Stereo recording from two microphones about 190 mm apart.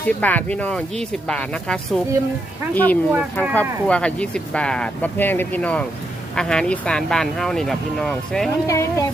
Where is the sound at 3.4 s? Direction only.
10° left (ahead or behind).